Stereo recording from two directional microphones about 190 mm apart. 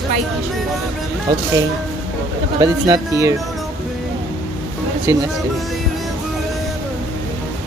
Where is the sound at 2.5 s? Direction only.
20° right (ahead or behind).